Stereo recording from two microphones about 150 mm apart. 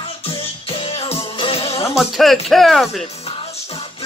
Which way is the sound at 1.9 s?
Centre (ahead or behind).